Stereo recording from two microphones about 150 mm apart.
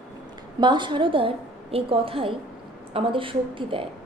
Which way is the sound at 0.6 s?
30° right (ahead or behind).